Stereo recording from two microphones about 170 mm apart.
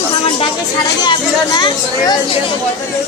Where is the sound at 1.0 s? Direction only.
25° left (ahead or behind).